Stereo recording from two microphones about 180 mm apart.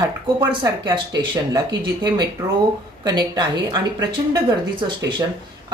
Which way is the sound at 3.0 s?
25° right (ahead or behind).